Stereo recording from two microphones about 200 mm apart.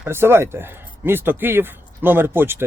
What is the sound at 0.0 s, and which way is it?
Speech, 10° right (ahead or behind).